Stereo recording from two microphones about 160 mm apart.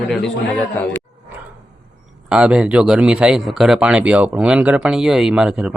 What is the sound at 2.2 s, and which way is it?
Speech, 5° right (ahead or behind).